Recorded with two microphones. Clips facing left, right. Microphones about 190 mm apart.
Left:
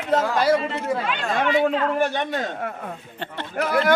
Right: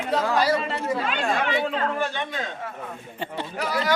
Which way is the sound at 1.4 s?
50° left (ahead or behind).